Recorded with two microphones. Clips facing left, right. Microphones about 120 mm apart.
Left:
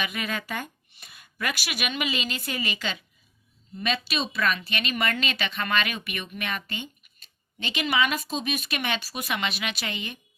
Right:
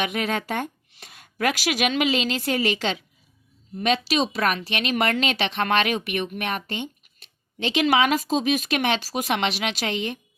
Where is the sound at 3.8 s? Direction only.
70° right (ahead or behind); by 10.2 s 90° right.